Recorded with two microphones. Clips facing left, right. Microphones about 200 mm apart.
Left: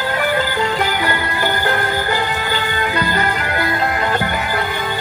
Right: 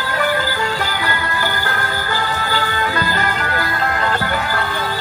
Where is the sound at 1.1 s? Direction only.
20° left (ahead or behind).